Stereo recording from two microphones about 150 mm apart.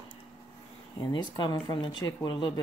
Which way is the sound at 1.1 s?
25° left (ahead or behind).